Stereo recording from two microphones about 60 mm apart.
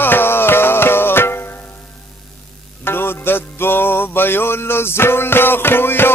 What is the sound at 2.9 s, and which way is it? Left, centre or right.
Music, left.